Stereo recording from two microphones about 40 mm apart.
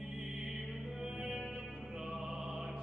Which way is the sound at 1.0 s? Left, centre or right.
Centre.